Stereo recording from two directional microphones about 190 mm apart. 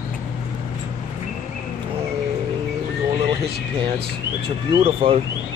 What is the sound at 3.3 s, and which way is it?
Speech, 25° right (ahead or behind).